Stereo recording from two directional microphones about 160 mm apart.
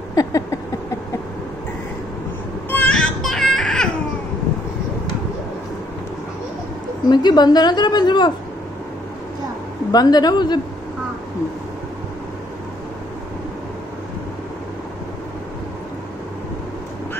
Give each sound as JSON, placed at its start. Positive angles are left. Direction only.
{"t": 0.1, "sound": "a sound", "side_deg": 20}
{"t": 2.7, "sound": "baby cry", "side_deg": 10}
{"t": 7.1, "sound": "a woman's voice", "side_deg": 25}
{"t": 9.8, "sound": "a woman's voice", "side_deg": 25}